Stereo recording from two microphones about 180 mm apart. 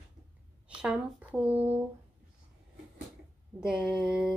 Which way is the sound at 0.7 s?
5° right (ahead or behind).